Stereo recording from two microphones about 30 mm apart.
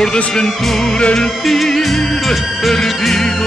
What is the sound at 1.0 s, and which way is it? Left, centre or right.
Music, left.